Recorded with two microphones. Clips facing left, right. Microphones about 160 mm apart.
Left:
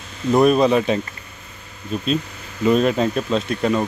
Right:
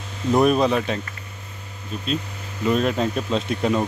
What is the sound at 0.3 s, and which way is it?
Speech, 5° left (ahead or behind).